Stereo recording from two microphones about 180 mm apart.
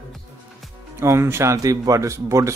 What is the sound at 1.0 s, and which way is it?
Speech, 15° right (ahead or behind).